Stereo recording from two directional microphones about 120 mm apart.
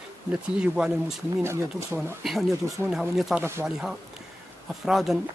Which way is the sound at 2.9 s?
Centre (ahead or behind).